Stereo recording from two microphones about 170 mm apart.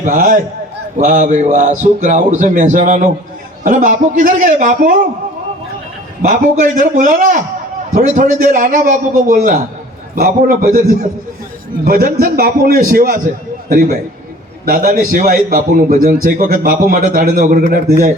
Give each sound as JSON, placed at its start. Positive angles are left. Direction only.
{"t": 0.0, "sound": "a man's voice", "side_deg": -50}
{"t": 6.2, "sound": "a man's voice", "side_deg": -50}